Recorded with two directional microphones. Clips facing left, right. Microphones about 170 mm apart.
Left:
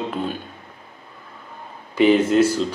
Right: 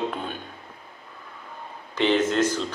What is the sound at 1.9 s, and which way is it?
Speech, 10° left (ahead or behind).